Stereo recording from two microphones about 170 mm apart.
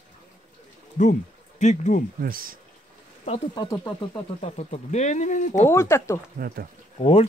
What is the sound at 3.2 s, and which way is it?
Speech, 30° left (ahead or behind).